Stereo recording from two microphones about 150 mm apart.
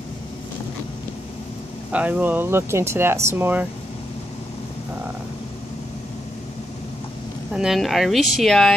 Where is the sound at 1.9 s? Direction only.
10° right (ahead or behind).